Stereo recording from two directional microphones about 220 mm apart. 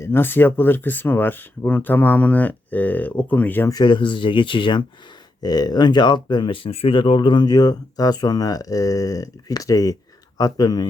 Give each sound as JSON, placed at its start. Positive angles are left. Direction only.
{"t": 0.0, "sound": "speech", "side_deg": 10}